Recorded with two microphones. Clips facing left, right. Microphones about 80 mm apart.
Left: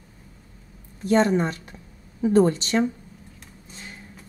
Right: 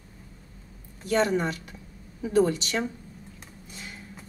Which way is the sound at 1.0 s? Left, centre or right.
Left.